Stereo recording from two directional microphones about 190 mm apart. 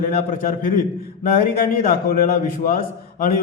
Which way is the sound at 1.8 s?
50° left (ahead or behind).